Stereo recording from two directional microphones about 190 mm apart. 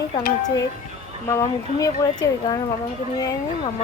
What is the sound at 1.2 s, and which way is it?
Speech, 15° left (ahead or behind).